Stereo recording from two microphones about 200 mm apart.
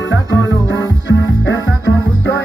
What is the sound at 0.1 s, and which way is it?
Music, 65° left (ahead or behind).